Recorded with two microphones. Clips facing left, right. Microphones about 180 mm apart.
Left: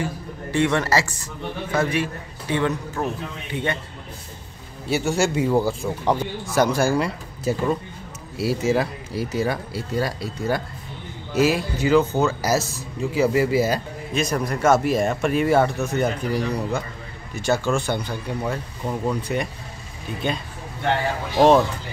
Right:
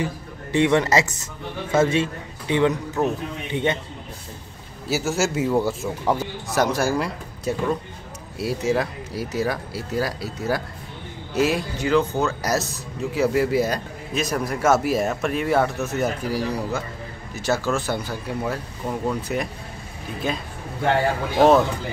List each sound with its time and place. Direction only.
0.0 s a man's voice: 20° right (ahead or behind)
4.8 s a man's voice: centre (ahead or behind)